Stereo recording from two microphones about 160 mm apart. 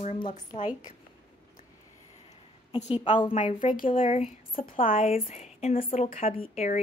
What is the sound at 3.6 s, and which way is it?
Speech, 55° left (ahead or behind).